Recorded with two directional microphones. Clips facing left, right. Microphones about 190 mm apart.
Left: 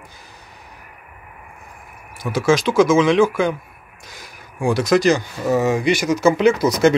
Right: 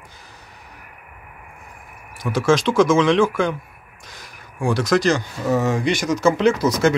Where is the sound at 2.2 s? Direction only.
5° left (ahead or behind).